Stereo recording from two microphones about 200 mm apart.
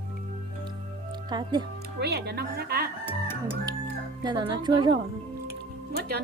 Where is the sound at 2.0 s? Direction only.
55° right (ahead or behind).